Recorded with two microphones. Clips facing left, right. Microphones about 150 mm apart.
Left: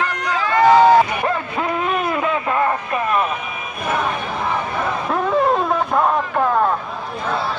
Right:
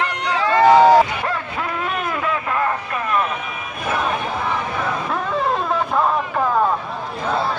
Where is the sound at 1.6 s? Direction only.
15° left (ahead or behind).